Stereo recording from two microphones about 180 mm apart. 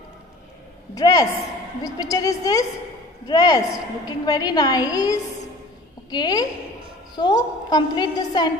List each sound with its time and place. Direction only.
0.9 s a woman's voice: 20° left (ahead or behind)